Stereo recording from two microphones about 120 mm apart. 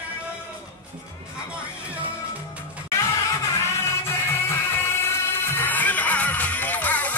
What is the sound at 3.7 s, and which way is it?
Music, 20° left (ahead or behind).